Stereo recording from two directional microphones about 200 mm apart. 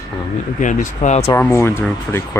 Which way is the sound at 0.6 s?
40° left (ahead or behind).